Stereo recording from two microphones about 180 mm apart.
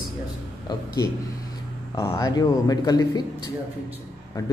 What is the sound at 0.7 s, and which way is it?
Speech, 20° left (ahead or behind).